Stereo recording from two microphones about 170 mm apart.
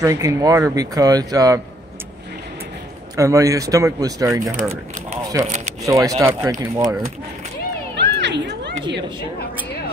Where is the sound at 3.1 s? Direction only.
20° right (ahead or behind).